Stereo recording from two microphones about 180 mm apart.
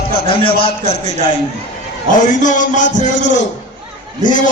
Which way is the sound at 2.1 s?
45° left (ahead or behind).